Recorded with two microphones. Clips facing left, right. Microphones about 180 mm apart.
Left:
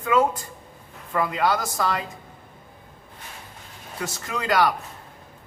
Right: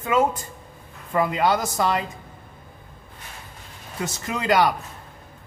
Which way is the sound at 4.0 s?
20° right (ahead or behind).